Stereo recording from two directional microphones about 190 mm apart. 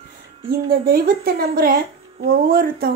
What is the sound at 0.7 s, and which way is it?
Speech, 50° right (ahead or behind).